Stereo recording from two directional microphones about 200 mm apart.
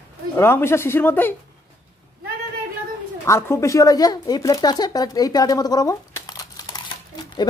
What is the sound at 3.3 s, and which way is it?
Speech, 15° left (ahead or behind).